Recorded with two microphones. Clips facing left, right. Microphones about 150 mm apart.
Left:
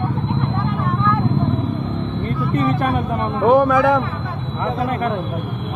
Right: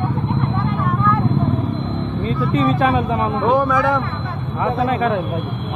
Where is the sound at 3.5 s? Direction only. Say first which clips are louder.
Left 4 dB; 50° left (ahead or behind).